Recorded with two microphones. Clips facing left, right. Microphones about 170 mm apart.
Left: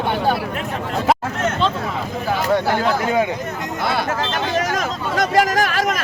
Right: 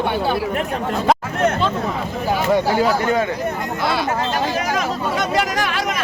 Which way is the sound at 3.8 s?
55° left (ahead or behind).